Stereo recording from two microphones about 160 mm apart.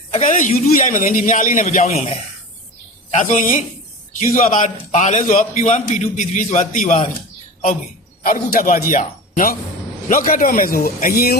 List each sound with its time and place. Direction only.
0.1 s a man's voice: 50° left (ahead or behind)
8.2 s a man's voice: 60° left (ahead or behind)